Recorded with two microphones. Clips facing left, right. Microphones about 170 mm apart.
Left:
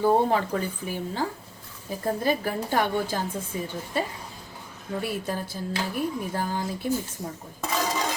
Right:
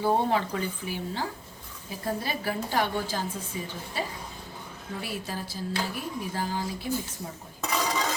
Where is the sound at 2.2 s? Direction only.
50° left (ahead or behind).